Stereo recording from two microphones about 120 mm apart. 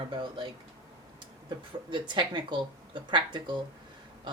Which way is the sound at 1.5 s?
40° right (ahead or behind).